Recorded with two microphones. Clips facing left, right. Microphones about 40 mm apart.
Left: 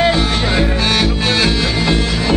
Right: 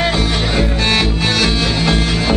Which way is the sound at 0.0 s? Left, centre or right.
Centre.